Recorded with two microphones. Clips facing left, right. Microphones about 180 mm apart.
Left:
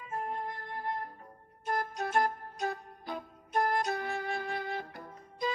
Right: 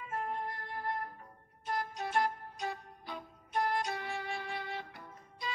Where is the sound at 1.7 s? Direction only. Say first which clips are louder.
Left 3 dB; 45° left (ahead or behind).